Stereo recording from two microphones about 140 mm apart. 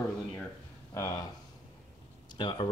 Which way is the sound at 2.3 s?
35° left (ahead or behind).